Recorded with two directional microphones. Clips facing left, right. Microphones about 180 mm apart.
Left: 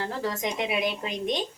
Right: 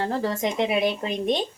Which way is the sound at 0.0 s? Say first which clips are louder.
Right 5 dB; 35° right (ahead or behind).